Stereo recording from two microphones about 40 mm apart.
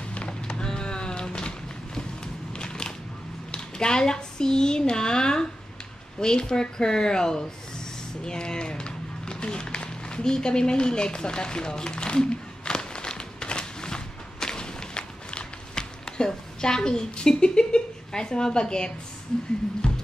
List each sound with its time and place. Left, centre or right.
0.1 s music: left
2.5 s crushing: left
3.5 s speech: centre
8.2 s a sound: centre